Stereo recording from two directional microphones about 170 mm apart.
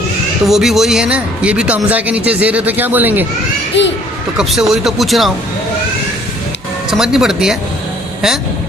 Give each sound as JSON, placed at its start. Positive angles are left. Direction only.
{"t": 0.4, "sound": "speech", "side_deg": 0}
{"t": 3.8, "sound": "a child's voice", "side_deg": 90}
{"t": 4.4, "sound": "speech", "side_deg": 0}
{"t": 6.9, "sound": "speech", "side_deg": -5}